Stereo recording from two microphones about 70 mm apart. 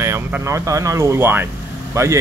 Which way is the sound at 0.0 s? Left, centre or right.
Right.